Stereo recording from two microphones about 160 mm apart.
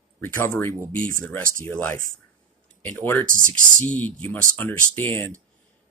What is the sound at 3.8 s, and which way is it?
Speech, 10° left (ahead or behind).